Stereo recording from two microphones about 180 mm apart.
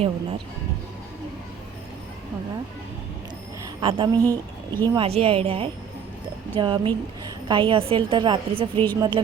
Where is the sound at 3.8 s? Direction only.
25° right (ahead or behind).